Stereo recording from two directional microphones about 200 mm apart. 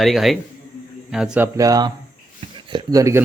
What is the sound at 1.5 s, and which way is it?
Speech, 20° right (ahead or behind).